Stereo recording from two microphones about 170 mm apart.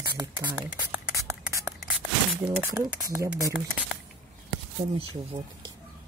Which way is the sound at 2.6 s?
15° right (ahead or behind).